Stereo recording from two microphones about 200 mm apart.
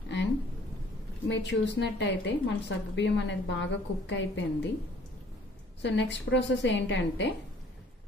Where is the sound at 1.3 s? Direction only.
60° left (ahead or behind).